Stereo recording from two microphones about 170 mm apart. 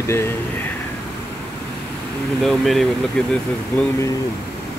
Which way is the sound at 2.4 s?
Centre (ahead or behind).